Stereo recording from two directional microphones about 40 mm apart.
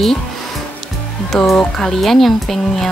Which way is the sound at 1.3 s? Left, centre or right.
Centre.